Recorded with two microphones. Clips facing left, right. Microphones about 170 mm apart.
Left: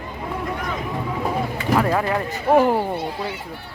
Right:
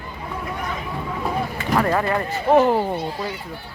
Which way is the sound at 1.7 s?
5° left (ahead or behind).